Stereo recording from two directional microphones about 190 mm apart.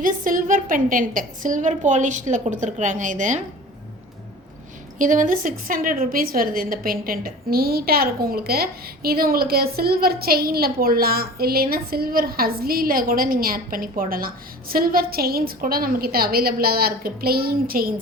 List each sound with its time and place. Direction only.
0.0 s a woman's voice: 45° right (ahead or behind)
4.9 s a woman's voice: 45° right (ahead or behind)